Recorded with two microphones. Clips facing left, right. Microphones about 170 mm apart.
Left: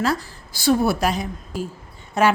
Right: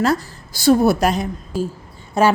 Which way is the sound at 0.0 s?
45° right (ahead or behind).